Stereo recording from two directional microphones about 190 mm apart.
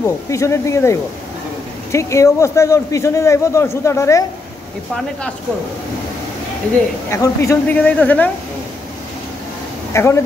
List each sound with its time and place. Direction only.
0.0 s a man's voice: 15° left (ahead or behind)
7.1 s a man's voice: 15° left (ahead or behind)
9.9 s a man's voice: 15° left (ahead or behind)